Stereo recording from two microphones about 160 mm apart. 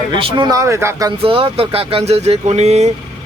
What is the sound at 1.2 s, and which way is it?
Speech, 35° right (ahead or behind).